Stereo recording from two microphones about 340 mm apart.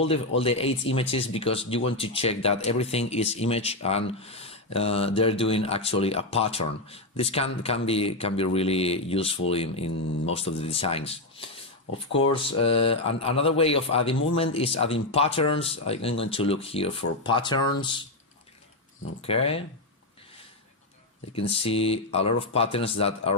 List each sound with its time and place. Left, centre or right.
0.0 s speech: centre
12.6 s speech: centre
19.2 s speech: centre
21.3 s speech: centre